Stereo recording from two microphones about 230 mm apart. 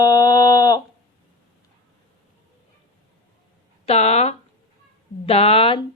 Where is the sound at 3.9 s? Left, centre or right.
Left.